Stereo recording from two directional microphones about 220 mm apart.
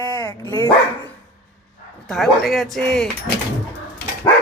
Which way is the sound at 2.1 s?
Centre (ahead or behind).